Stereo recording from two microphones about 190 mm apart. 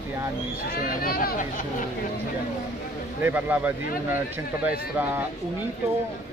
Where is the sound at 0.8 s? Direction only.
50° left (ahead or behind).